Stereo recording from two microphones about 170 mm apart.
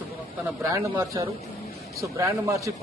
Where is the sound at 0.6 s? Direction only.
20° right (ahead or behind).